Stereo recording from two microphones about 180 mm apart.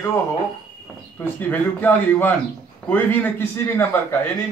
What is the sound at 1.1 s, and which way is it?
Speech, 10° left (ahead or behind).